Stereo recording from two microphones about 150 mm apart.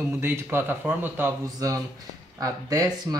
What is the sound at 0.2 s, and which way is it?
Speech, 15° right (ahead or behind).